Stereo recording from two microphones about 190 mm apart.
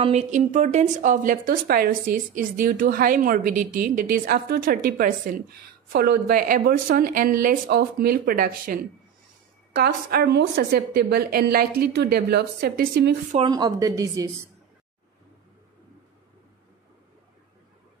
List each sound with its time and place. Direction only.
0.0 s a woman's voice: 35° right (ahead or behind); by 13.1 s 55° right (ahead or behind)
13.5 s a woman's voice: 20° right (ahead or behind)